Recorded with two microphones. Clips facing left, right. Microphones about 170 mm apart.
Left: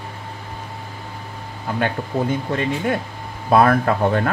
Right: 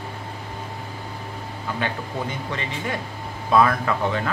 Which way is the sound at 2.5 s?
55° left (ahead or behind).